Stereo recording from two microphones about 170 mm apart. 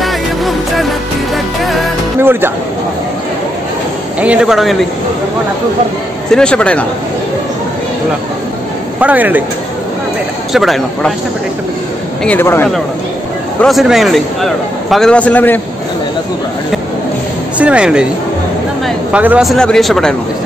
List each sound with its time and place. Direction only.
0.0 s music: centre (ahead or behind)
2.1 s music: 15° right (ahead or behind)
4.2 s a man's voice: 5° right (ahead or behind)
6.3 s speech: 5° left (ahead or behind)
9.0 s speech: 10° right (ahead or behind)
10.5 s a man's voice: centre (ahead or behind)
12.3 s speech: 15° left (ahead or behind)
13.6 s a man's voice: centre (ahead or behind)
17.6 s speech: 5° right (ahead or behind)
19.1 s a man's voice: 5° right (ahead or behind)